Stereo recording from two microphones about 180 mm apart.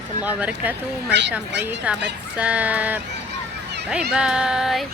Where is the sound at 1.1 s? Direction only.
75° right (ahead or behind).